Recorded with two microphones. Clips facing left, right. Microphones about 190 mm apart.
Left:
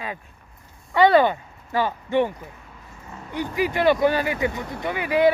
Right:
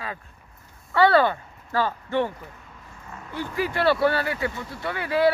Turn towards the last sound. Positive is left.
turn(degrees=15)  # may be behind; listen again after turning